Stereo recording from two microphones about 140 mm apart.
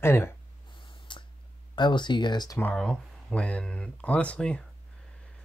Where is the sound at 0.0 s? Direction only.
20° left (ahead or behind).